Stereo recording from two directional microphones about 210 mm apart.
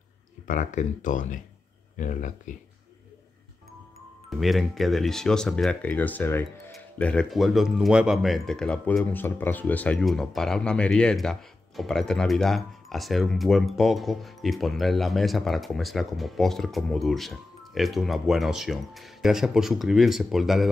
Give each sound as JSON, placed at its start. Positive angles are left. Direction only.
{"t": 0.5, "sound": "speech", "side_deg": 35}
{"t": 4.3, "sound": "speech", "side_deg": 0}